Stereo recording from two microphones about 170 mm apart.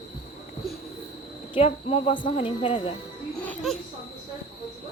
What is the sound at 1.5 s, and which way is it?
Speech, 35° left (ahead or behind).